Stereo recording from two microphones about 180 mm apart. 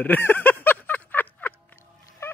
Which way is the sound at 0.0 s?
10° left (ahead or behind).